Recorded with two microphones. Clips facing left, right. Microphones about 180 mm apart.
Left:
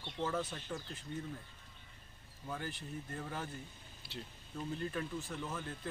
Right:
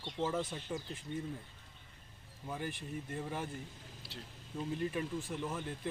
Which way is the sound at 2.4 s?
15° right (ahead or behind).